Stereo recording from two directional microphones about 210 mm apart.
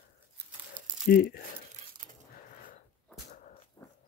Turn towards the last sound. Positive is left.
turn(degrees=20)  # may be behind; listen again after turning